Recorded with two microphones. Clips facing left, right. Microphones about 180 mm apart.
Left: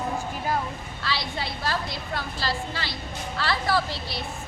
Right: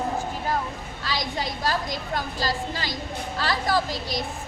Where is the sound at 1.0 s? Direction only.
40° right (ahead or behind).